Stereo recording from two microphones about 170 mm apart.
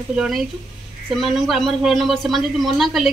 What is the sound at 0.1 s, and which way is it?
Speech, 5° right (ahead or behind).